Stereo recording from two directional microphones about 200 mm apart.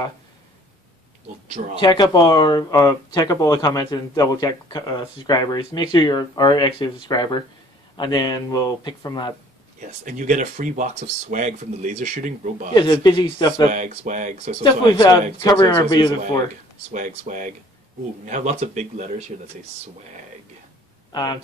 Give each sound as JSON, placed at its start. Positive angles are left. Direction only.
{"t": 1.8, "sound": "speech", "side_deg": 20}
{"t": 9.8, "sound": "speech", "side_deg": -40}
{"t": 12.7, "sound": "speech", "side_deg": 20}
{"t": 13.7, "sound": "speech", "side_deg": -40}
{"t": 14.6, "sound": "speech", "side_deg": 20}
{"t": 16.9, "sound": "speech", "side_deg": -40}
{"t": 21.1, "sound": "speech", "side_deg": 20}